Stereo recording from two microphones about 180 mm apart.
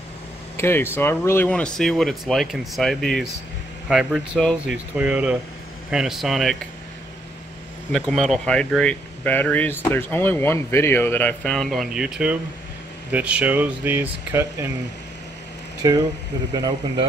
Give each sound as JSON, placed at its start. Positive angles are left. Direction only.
{"t": 0.6, "sound": "speech", "side_deg": 10}
{"t": 7.9, "sound": "speech", "side_deg": 5}
{"t": 15.8, "sound": "speech", "side_deg": -20}